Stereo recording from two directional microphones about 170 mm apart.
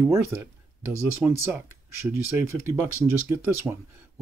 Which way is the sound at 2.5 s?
15° right (ahead or behind).